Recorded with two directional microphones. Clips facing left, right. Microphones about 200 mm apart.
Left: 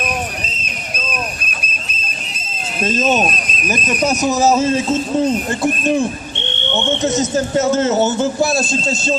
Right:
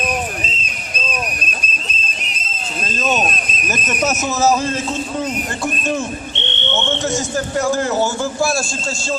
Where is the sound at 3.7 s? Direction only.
15° left (ahead or behind).